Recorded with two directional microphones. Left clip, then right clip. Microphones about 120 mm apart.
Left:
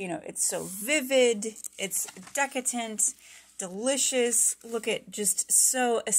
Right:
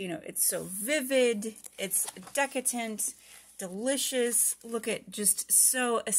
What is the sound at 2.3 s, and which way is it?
Speech, 5° right (ahead or behind).